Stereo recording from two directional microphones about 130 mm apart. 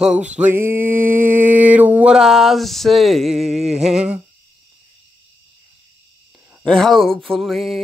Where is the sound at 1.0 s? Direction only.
90° right.